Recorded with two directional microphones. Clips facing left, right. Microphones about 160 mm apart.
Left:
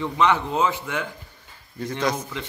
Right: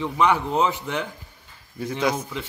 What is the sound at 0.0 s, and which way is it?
A man's voice, 10° right (ahead or behind).